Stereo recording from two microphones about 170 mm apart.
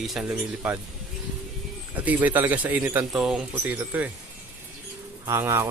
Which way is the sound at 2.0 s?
10° right (ahead or behind).